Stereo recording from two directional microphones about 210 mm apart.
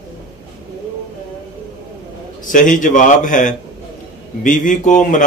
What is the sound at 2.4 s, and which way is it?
Speech, 40° left (ahead or behind).